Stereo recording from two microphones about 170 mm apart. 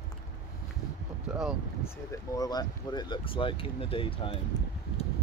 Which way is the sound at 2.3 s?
25° left (ahead or behind).